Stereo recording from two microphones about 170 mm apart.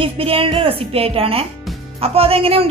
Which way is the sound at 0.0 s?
35° right (ahead or behind).